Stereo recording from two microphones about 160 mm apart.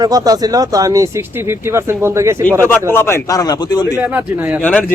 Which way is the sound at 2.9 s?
15° left (ahead or behind).